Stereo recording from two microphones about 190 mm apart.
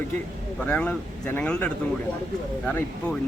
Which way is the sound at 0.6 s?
5° left (ahead or behind).